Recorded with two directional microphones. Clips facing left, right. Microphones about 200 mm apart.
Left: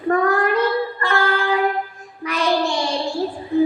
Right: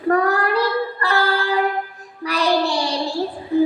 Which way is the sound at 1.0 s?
35° right (ahead or behind).